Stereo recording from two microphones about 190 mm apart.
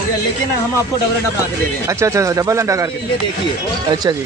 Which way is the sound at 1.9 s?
15° right (ahead or behind).